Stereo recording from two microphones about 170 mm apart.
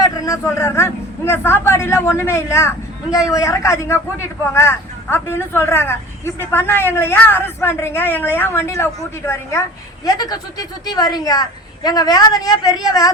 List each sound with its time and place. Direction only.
0.0 s a woman's voice: 20° left (ahead or behind)